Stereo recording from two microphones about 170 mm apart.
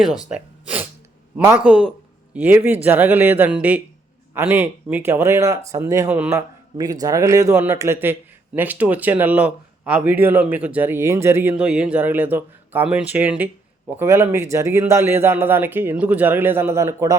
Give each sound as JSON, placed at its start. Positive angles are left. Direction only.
{"t": 0.3, "sound": "gasp", "side_deg": -10}
{"t": 1.5, "sound": "speech", "side_deg": -10}
{"t": 6.7, "sound": "speech", "side_deg": -20}